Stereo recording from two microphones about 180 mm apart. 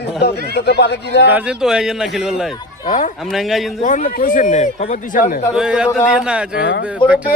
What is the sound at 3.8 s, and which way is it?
Speech, 50° left (ahead or behind).